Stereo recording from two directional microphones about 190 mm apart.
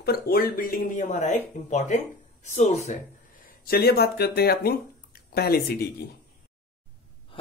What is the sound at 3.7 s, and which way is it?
Speech, 55° left (ahead or behind).